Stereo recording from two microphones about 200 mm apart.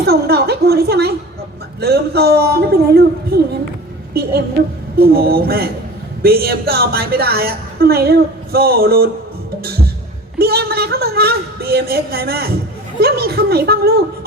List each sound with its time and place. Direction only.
0.0 s a woman's voice: 50° right (ahead or behind)
10.3 s a woman's voice: 50° right (ahead or behind)